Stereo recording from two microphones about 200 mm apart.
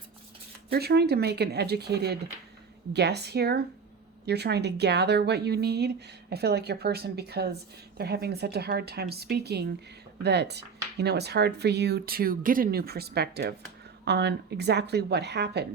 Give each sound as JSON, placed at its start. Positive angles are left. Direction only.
{"t": 0.7, "sound": "speech", "side_deg": -55}